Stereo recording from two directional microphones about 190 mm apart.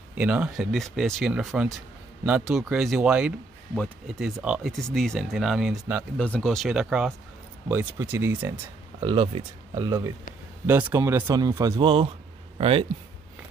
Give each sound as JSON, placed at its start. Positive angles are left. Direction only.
{"t": 0.1, "sound": "speech", "side_deg": -5}
{"t": 3.7, "sound": "speech", "side_deg": 5}
{"t": 6.1, "sound": "speech", "side_deg": 5}
{"t": 9.0, "sound": "speech", "side_deg": -25}